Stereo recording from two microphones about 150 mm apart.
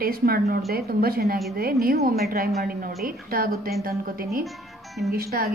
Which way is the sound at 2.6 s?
75° right (ahead or behind).